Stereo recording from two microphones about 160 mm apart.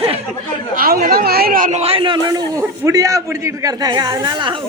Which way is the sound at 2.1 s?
20° right (ahead or behind).